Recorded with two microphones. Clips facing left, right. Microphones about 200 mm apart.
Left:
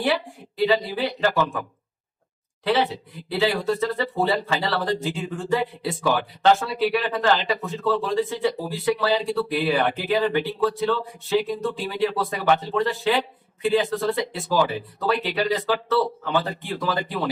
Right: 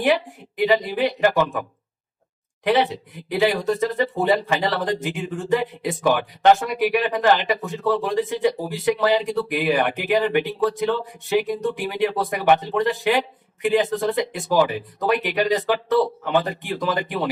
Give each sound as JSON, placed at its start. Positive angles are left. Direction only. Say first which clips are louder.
{"t": 0.0, "sound": "speech", "louder": "right 4 dB", "side_deg": -15}
{"t": 2.6, "sound": "speech", "louder": "right 2 dB", "side_deg": -15}